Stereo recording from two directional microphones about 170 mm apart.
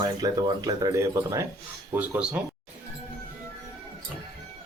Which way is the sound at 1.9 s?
10° right (ahead or behind).